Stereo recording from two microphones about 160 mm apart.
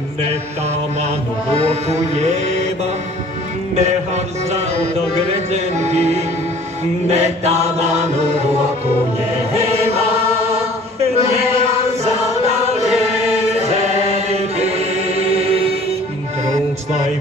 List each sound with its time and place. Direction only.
1.6 s music: 40° right (ahead or behind)
7.1 s chant: 45° right (ahead or behind)
9.5 s choir: 40° right (ahead or behind)
12.6 s chant: 40° right (ahead or behind)